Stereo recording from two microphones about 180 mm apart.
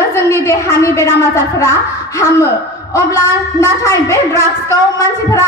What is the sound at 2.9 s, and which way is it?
A woman's voice, 20° left (ahead or behind).